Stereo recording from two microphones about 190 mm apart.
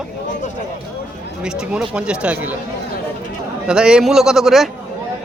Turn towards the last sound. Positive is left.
turn(degrees=0)  # may be behind; listen again after turning